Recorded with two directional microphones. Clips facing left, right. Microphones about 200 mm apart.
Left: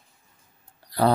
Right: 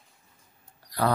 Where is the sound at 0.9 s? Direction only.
30° left (ahead or behind).